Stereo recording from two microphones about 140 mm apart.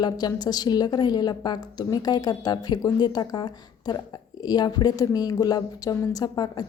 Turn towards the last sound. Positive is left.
turn(degrees=30)  # may be behind; listen again after turning